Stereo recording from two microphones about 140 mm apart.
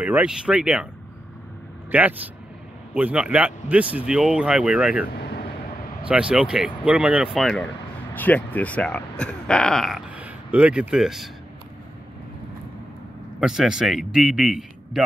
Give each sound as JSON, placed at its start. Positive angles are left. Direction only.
{"t": 0.0, "sound": "speech", "side_deg": -10}
{"t": 1.9, "sound": "speech", "side_deg": -10}
{"t": 6.0, "sound": "a man's voice", "side_deg": -10}
{"t": 8.1, "sound": "speech", "side_deg": 10}
{"t": 13.4, "sound": "a man's voice", "side_deg": -5}